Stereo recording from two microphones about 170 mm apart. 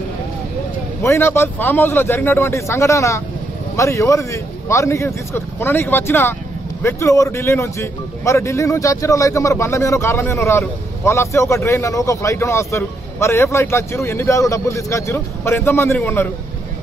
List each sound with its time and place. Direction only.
1.0 s a man's voice: 15° left (ahead or behind)